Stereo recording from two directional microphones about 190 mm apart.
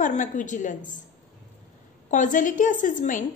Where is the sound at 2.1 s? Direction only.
40° left (ahead or behind).